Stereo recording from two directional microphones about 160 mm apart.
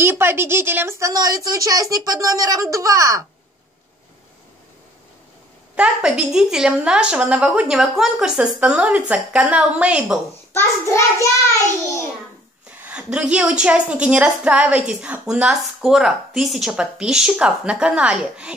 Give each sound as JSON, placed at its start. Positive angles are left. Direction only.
{"t": 0.0, "sound": "speech", "side_deg": -15}
{"t": 5.8, "sound": "a woman's voice", "side_deg": -5}
{"t": 10.5, "sound": "child singing", "side_deg": 15}
{"t": 12.8, "sound": "a woman's voice", "side_deg": -5}